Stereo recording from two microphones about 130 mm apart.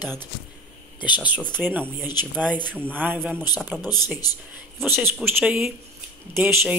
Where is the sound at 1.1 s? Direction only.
10° right (ahead or behind).